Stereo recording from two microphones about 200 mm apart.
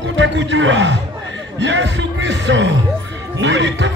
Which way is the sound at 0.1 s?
70° right (ahead or behind).